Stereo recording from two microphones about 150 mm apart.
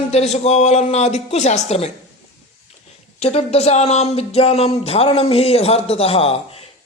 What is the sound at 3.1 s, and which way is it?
Speech, 45° left (ahead or behind).